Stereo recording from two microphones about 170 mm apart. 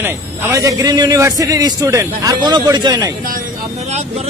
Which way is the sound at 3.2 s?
55° right (ahead or behind).